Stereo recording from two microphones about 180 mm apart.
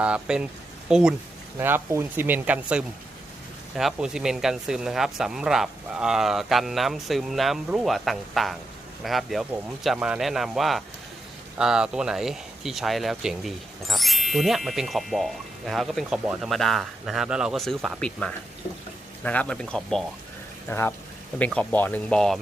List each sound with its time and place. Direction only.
0.0 s speech: 5° right (ahead or behind)